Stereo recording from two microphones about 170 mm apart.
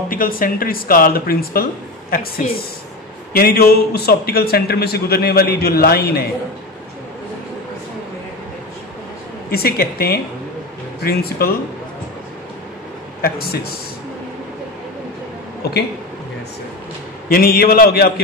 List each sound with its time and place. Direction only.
0.1 s a man's voice: 55° left (ahead or behind)
9.5 s a man's voice: 65° left (ahead or behind)
13.2 s a man's voice: 65° left (ahead or behind)
15.6 s speech: 70° left (ahead or behind)
17.3 s a man's voice: 60° left (ahead or behind)